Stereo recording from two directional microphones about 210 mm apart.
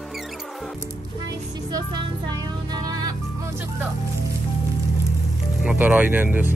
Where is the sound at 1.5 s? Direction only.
20° right (ahead or behind).